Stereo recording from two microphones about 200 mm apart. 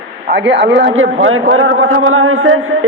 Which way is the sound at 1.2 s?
90° right.